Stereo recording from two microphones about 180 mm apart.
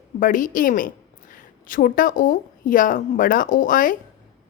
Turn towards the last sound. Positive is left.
turn(degrees=50)  # may be behind; listen again after turning